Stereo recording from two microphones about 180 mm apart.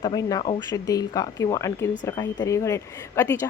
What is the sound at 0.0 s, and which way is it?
Speech, 20° left (ahead or behind).